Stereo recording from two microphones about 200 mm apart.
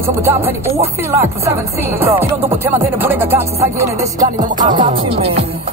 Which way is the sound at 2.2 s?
10° right (ahead or behind).